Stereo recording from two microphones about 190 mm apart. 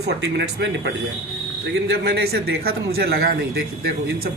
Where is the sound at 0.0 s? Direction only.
65° right (ahead or behind).